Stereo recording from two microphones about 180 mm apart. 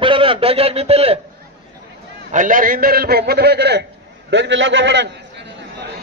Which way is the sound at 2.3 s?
50° right (ahead or behind).